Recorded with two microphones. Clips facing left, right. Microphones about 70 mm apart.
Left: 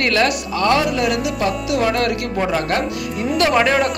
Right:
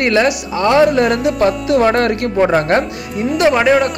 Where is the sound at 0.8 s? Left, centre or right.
Right.